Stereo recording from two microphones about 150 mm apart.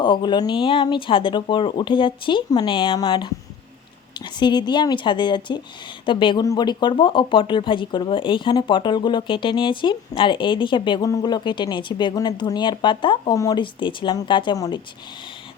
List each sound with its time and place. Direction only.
0.0 s speech: 30° left (ahead or behind)